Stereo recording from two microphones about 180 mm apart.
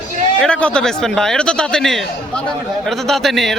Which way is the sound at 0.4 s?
5° left (ahead or behind).